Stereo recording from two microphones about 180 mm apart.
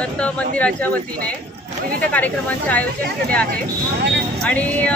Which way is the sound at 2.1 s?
10° left (ahead or behind).